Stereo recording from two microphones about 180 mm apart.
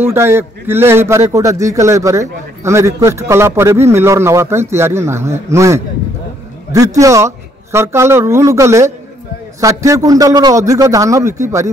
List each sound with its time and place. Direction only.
0.0 s a man's voice: 10° right (ahead or behind)
7.0 s a man's voice: 15° right (ahead or behind)